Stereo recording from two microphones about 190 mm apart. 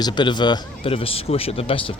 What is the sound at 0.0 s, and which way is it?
Speech, 25° left (ahead or behind).